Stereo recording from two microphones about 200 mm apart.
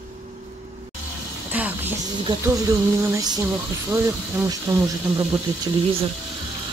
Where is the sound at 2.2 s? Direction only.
15° right (ahead or behind).